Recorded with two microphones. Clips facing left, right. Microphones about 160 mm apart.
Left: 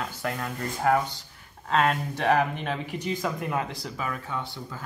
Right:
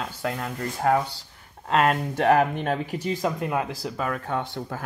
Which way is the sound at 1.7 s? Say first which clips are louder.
Right 3 dB; 45° right (ahead or behind).